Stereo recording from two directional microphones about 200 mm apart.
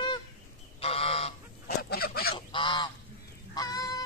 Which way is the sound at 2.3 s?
25° left (ahead or behind).